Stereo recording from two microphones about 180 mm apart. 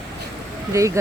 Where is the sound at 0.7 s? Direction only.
15° right (ahead or behind).